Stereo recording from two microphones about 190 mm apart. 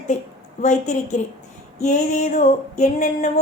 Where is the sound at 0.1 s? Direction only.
40° left (ahead or behind).